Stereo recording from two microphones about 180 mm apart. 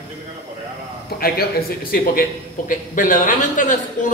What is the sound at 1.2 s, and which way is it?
A man's voice, 60° left (ahead or behind).